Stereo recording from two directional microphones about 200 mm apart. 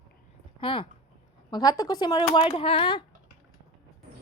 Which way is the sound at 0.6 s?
25° left (ahead or behind).